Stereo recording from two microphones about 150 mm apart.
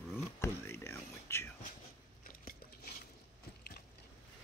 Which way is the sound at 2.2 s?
70° left (ahead or behind).